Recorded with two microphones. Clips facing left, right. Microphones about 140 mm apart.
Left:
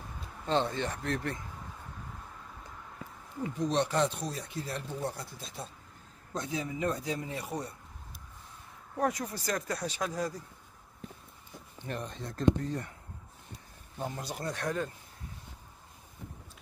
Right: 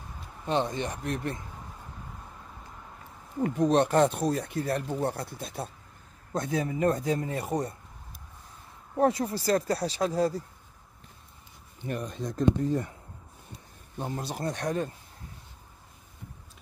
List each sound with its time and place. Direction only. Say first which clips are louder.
0.5 s speech: right 2 dB; 15° right (ahead or behind)
3.4 s speech: right 7 dB; 60° right (ahead or behind)
8.9 s speech: right 7 dB; 30° right (ahead or behind)
12.1 s speech: right 1 dB; 15° right (ahead or behind)
14.2 s speech: right 4 dB; 25° right (ahead or behind)